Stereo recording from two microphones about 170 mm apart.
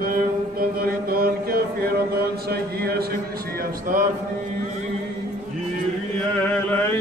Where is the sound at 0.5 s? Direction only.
60° right (ahead or behind).